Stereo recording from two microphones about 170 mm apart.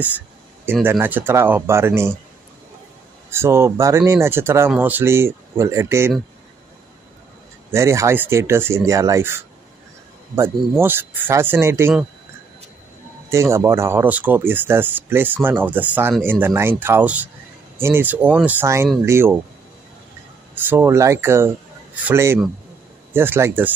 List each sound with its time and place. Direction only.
0.8 s speech: 10° right (ahead or behind)
3.3 s speech: 15° right (ahead or behind)
7.7 s speech: 15° right (ahead or behind)
13.3 s speech: 15° right (ahead or behind)
20.5 s speech: 10° right (ahead or behind)